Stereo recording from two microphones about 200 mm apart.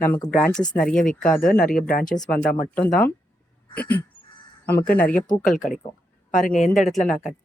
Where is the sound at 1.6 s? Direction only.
45° left (ahead or behind).